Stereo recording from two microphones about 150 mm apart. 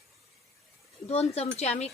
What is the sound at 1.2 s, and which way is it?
Speech, 45° left (ahead or behind).